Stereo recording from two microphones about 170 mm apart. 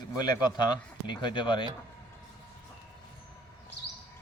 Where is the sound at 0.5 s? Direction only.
25° left (ahead or behind).